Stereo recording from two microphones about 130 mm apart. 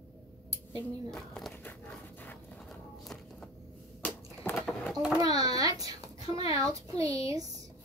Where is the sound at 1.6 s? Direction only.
15° left (ahead or behind).